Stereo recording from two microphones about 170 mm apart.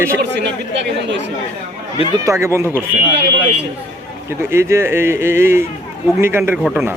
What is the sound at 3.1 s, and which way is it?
Speech, 85° right.